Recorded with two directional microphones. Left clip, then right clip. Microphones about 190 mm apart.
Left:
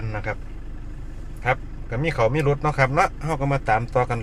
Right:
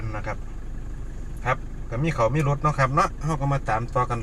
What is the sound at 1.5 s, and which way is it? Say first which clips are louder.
Speech: left 3 dB; 55° left (ahead or behind).